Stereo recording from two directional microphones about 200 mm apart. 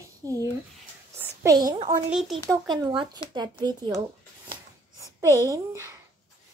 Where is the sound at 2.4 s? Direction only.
20° right (ahead or behind).